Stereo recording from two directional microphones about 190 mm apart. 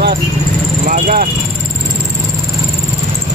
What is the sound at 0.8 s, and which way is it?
Vehicle, 45° right (ahead or behind).